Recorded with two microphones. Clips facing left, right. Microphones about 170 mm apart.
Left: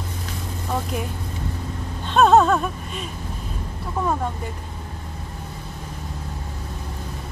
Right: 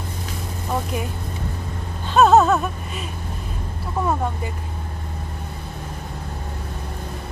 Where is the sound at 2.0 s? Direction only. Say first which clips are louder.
Right 1 dB; 5° right (ahead or behind).